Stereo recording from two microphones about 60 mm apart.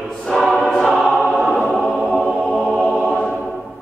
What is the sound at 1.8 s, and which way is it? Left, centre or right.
Choir, centre.